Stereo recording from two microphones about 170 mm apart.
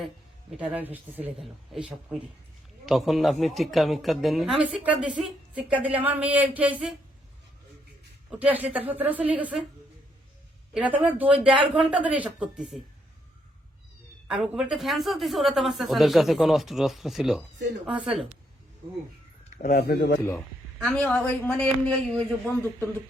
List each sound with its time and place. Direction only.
0.5 s speech: 5° right (ahead or behind)
8.4 s speech: 10° right (ahead or behind)
10.8 s speech: 10° right (ahead or behind)
14.3 s speech: 5° right (ahead or behind)
19.7 s speech: 65° left (ahead or behind)
20.7 s speech: 5° left (ahead or behind)